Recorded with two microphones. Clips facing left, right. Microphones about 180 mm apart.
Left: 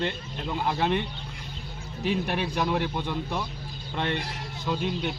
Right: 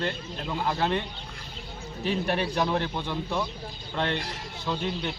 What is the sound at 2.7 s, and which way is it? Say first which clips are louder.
Speech: left 1 dB; 10° left (ahead or behind).